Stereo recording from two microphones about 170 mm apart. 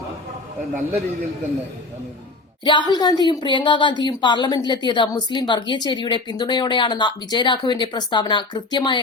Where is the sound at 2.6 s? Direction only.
25° left (ahead or behind).